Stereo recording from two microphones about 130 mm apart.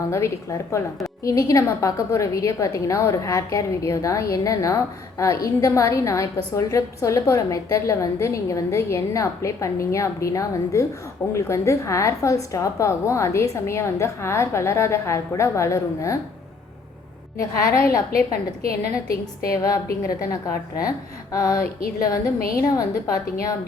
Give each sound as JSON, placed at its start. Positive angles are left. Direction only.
{"t": 0.0, "sound": "a woman's voice", "side_deg": 25}
{"t": 17.3, "sound": "a woman's voice", "side_deg": 25}
{"t": 19.5, "sound": "a woman's voice", "side_deg": 30}